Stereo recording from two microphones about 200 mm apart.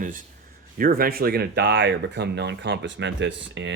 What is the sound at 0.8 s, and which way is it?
Speech, 45° right (ahead or behind).